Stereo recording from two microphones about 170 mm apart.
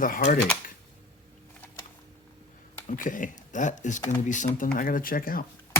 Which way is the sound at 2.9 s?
50° left (ahead or behind).